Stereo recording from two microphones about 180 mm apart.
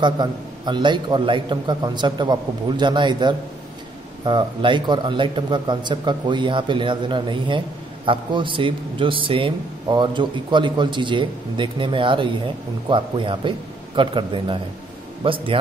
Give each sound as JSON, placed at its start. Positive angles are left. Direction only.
{"t": 0.0, "sound": "a man's voice", "side_deg": -25}